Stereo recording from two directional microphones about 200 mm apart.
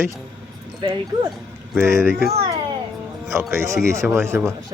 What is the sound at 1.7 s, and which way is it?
Speech, 10° right (ahead or behind).